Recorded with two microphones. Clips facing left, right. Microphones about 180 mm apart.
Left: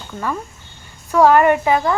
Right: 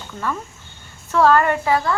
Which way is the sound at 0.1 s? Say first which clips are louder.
Left 2 dB; 10° left (ahead or behind).